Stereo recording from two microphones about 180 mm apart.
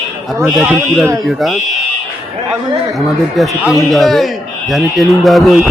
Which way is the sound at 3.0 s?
Centre (ahead or behind).